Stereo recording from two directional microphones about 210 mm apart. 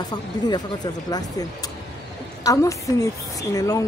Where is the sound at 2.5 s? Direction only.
15° left (ahead or behind).